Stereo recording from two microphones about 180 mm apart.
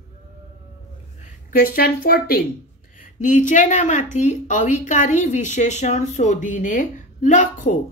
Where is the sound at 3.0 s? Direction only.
45° left (ahead or behind).